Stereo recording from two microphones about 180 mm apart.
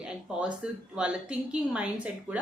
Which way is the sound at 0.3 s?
5° right (ahead or behind).